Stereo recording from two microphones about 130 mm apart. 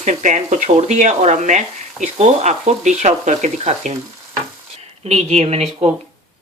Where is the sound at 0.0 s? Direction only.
70° right (ahead or behind).